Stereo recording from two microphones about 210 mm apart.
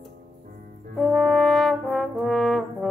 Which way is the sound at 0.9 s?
Centre (ahead or behind).